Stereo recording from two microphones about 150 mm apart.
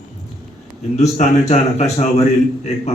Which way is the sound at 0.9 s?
50° left (ahead or behind).